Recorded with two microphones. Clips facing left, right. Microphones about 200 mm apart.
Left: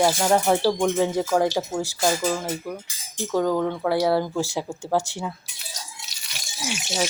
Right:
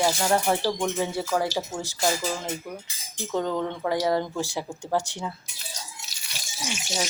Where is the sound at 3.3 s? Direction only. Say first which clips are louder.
Left 5 dB; 10° left (ahead or behind).